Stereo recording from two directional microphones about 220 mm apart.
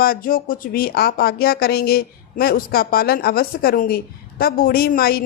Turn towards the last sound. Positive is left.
turn(degrees=45)  # may be behind; listen again after turning